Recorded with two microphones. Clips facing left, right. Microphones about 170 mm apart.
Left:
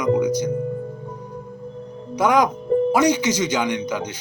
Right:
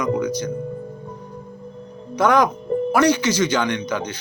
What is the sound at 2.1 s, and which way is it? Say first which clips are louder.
Speech: right 1 dB; 15° left (ahead or behind).